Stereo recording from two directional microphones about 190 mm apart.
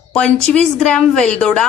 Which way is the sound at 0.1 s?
5° left (ahead or behind).